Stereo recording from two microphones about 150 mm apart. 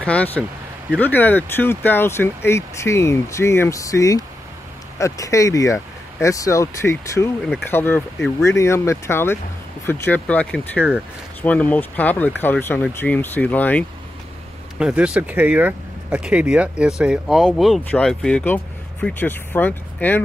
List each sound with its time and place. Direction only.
0.0 s speech: 10° left (ahead or behind)
14.8 s speech: 5° right (ahead or behind); by 20.2 s 10° left (ahead or behind)